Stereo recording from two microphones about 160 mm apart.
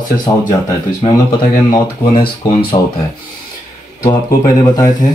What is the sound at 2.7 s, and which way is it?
Speech, 25° left (ahead or behind).